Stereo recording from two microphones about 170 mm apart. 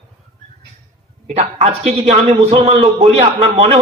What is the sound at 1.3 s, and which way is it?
A man's voice, 35° right (ahead or behind).